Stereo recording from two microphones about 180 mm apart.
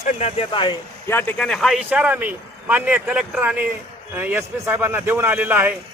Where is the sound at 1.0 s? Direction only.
10° left (ahead or behind).